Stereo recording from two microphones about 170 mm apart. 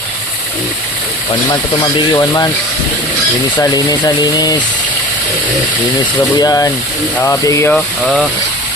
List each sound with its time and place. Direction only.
1.5 s speech: 25° left (ahead or behind)
3.6 s speech: 20° left (ahead or behind)
6.4 s speech: 20° left (ahead or behind)
7.7 s speech: centre (ahead or behind)